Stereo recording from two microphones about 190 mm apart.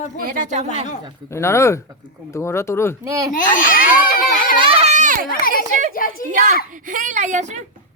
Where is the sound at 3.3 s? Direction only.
45° left (ahead or behind).